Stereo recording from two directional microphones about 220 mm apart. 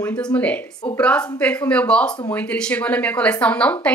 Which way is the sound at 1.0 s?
5° left (ahead or behind).